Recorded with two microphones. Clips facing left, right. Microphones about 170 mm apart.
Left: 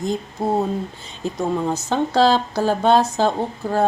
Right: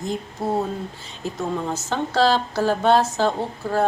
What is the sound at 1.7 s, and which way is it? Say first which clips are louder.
A woman's voice: left 4 dB; 15° left (ahead or behind).